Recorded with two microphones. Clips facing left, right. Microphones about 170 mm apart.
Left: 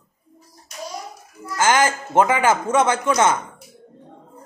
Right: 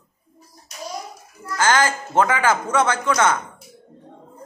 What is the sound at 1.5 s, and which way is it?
A man's voice, 20° left (ahead or behind).